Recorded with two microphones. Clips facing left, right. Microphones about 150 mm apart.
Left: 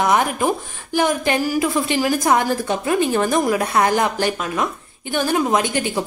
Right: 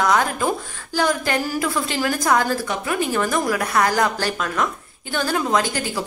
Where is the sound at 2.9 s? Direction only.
30° left (ahead or behind).